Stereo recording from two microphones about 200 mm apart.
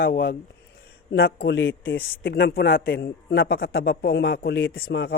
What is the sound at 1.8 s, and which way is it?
A man's voice, 45° left (ahead or behind).